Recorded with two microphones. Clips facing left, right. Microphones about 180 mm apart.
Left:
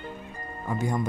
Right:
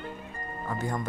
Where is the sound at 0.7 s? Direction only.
15° left (ahead or behind).